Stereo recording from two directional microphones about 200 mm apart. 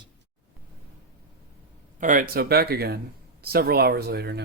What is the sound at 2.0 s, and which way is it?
Speech, 40° right (ahead or behind).